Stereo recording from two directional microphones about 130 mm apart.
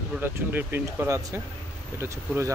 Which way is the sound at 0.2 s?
15° right (ahead or behind).